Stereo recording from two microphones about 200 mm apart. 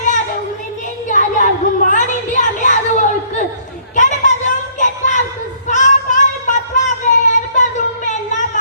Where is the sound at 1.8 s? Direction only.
40° left (ahead or behind).